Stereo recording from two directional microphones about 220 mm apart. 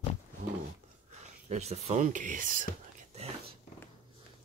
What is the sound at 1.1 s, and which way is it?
Whispering, 30° right (ahead or behind).